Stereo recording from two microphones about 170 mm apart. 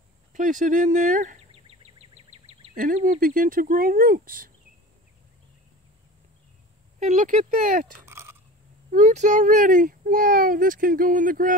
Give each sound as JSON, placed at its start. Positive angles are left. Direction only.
{"t": 0.3, "sound": "speech", "side_deg": -50}
{"t": 2.7, "sound": "speech", "side_deg": -50}
{"t": 7.0, "sound": "speech", "side_deg": -45}
{"t": 8.0, "sound": "crunch", "side_deg": -15}
{"t": 8.9, "sound": "speech", "side_deg": -45}